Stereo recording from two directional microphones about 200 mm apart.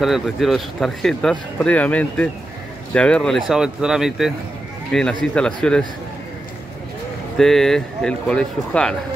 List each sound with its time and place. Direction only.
0.0 s speech: centre (ahead or behind)
7.3 s speech: centre (ahead or behind)